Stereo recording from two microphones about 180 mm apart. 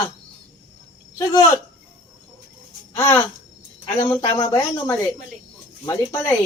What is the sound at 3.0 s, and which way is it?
A woman's voice, 15° left (ahead or behind).